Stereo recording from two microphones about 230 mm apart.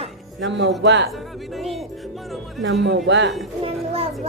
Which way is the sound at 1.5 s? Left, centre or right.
Centre.